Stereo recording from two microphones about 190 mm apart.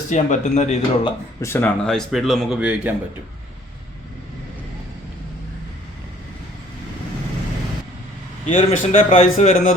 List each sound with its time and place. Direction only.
0.1 s speech: 40° left (ahead or behind)
1.4 s speech: 15° left (ahead or behind); by 2.9 s 5° right (ahead or behind)
8.4 s speech: 35° left (ahead or behind)